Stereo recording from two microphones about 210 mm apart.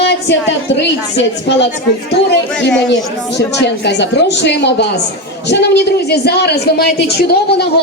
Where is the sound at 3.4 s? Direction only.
55° left (ahead or behind).